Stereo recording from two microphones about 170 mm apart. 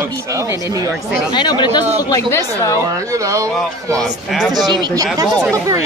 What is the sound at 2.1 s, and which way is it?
Speech, 15° left (ahead or behind).